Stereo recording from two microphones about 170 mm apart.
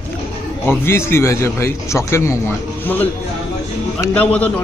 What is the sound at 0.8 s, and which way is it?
A man's voice, 15° left (ahead or behind).